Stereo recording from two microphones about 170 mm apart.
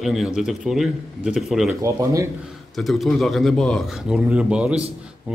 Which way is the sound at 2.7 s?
Centre (ahead or behind).